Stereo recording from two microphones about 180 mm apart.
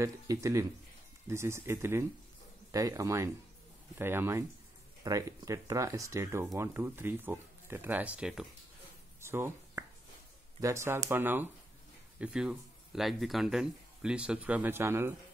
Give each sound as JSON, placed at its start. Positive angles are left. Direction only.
{"t": 0.0, "sound": "speech", "side_deg": -15}
{"t": 9.2, "sound": "finger snapping", "side_deg": -15}
{"t": 10.6, "sound": "speech", "side_deg": -15}